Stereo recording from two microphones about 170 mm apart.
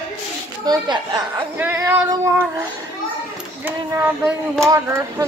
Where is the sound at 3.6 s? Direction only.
15° right (ahead or behind).